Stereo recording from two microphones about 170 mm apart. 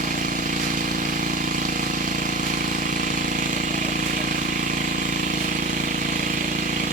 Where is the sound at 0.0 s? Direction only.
50° right (ahead or behind).